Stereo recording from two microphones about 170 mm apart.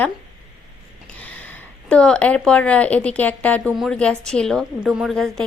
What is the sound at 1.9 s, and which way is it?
A woman's voice, 5° left (ahead or behind).